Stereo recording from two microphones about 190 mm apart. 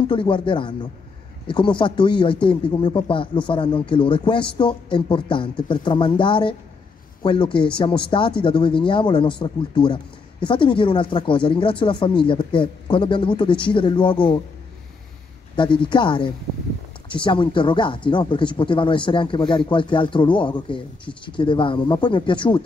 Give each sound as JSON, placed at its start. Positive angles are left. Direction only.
{"t": 0.0, "sound": "speech", "side_deg": 25}
{"t": 15.5, "sound": "speech", "side_deg": 25}